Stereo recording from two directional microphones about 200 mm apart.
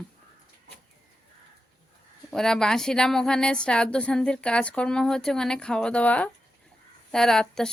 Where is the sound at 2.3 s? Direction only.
5° left (ahead or behind).